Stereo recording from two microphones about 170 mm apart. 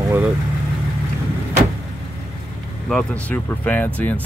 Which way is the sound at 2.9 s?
5° left (ahead or behind).